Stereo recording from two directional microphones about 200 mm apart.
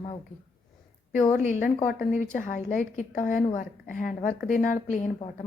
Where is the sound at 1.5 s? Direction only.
40° left (ahead or behind).